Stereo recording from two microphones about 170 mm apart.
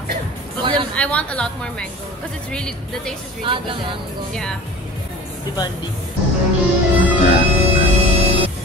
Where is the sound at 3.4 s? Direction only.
30° right (ahead or behind).